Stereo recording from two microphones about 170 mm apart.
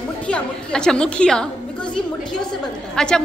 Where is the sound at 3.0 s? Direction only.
5° left (ahead or behind).